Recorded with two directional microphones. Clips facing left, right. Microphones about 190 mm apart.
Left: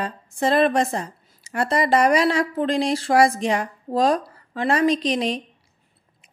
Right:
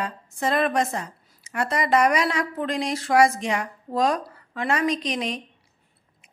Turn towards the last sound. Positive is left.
turn(degrees=35)  # may be behind; listen again after turning